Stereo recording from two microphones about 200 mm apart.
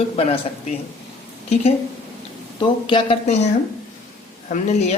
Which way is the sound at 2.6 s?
25° left (ahead or behind).